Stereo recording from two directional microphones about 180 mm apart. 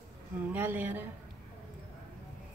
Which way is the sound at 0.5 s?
10° right (ahead or behind).